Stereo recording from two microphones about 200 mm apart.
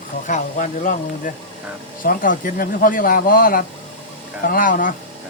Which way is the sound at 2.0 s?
45° left (ahead or behind).